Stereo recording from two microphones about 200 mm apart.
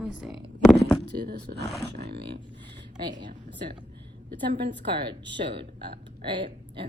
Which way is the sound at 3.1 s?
20° right (ahead or behind).